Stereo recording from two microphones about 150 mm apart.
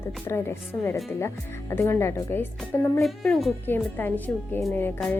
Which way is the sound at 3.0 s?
Centre (ahead or behind).